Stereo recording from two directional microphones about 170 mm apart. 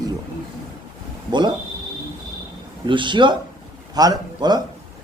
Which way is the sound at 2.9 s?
30° right (ahead or behind).